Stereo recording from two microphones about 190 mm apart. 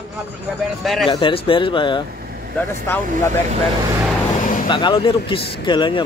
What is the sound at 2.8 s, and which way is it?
Speech, 10° left (ahead or behind).